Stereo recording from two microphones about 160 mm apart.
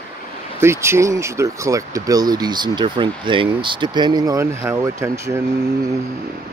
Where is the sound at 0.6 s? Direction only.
15° right (ahead or behind).